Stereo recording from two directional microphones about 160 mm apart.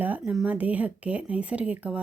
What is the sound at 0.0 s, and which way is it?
Speech, 10° right (ahead or behind).